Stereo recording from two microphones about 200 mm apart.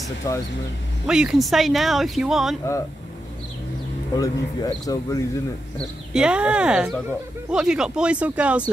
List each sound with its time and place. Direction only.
0.2 s speech: 15° left (ahead or behind)
1.0 s speech: 5° right (ahead or behind)
4.1 s speech: 20° left (ahead or behind)
5.8 s speech: 5° right (ahead or behind)